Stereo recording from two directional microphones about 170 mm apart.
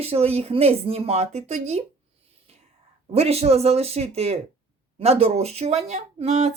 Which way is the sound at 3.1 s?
40° right (ahead or behind).